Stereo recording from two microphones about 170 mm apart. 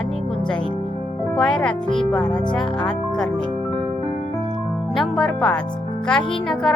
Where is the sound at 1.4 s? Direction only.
5° left (ahead or behind).